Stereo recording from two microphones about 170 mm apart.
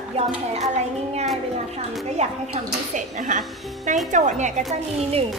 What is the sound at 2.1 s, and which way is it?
A woman's voice, 45° right (ahead or behind).